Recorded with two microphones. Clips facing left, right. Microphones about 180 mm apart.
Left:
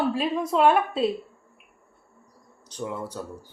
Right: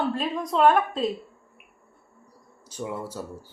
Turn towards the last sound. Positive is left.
turn(degrees=-5)  # may be behind; listen again after turning